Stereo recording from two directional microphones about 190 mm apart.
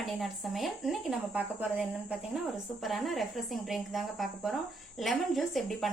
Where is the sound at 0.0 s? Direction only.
Centre (ahead or behind).